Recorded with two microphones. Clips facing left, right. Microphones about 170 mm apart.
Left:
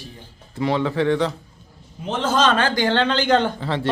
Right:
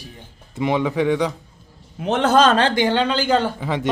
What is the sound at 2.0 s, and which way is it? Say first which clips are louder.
Speech: right 5 dB; 70° right (ahead or behind).